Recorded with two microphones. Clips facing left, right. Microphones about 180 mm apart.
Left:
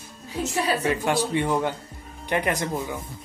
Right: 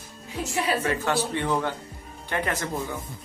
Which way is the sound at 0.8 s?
15° left (ahead or behind).